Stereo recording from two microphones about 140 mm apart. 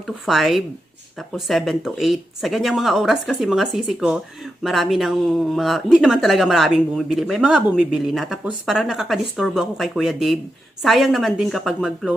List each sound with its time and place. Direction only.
0.3 s speech: centre (ahead or behind)